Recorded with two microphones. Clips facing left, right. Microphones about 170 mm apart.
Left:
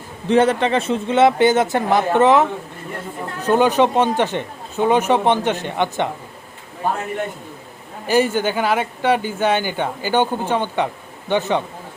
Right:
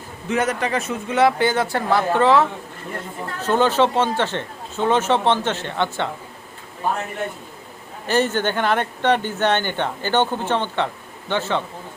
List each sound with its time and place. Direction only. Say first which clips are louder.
0.3 s speech: left 6 dB; 30° left (ahead or behind)
8.0 s speech: left 3 dB; 10° left (ahead or behind)